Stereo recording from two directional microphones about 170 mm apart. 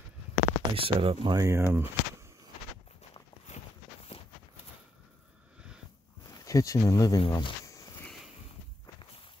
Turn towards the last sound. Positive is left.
turn(degrees=20)  # may be behind; listen again after turning